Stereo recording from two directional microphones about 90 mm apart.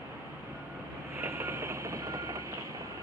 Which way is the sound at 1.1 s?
30° right (ahead or behind).